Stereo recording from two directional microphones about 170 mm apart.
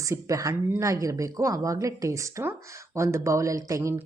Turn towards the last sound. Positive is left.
turn(degrees=-20)  # may be behind; listen again after turning